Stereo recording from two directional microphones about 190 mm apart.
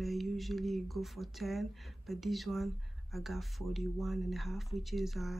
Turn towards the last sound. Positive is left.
turn(degrees=0)  # may be behind; listen again after turning